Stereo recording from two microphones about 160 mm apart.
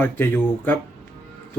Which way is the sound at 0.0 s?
15° left (ahead or behind).